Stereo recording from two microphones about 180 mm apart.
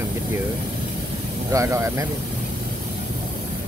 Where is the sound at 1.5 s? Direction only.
15° right (ahead or behind).